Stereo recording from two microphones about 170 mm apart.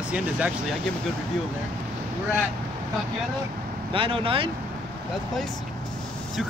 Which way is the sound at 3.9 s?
30° right (ahead or behind).